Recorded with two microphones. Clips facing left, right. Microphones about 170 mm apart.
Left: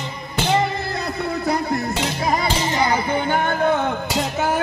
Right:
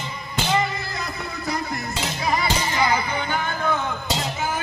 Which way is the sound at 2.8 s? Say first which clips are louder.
Left 4 dB; 50° left (ahead or behind).